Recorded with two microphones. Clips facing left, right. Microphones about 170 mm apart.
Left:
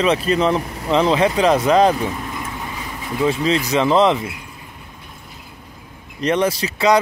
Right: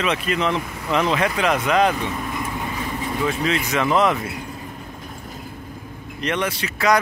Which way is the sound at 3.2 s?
30° left (ahead or behind).